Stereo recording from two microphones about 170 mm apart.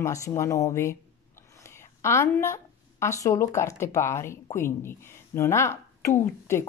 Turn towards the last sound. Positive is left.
turn(degrees=15)  # may be behind; listen again after turning